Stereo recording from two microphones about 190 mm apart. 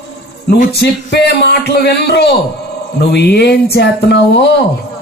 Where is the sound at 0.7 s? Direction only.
60° left (ahead or behind).